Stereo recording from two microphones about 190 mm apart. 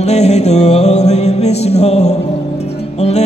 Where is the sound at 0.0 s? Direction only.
35° left (ahead or behind).